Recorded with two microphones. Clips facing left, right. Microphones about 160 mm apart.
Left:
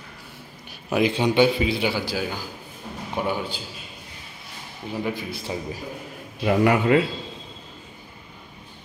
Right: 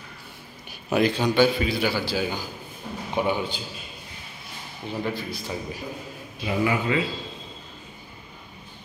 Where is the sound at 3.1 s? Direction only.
5° left (ahead or behind).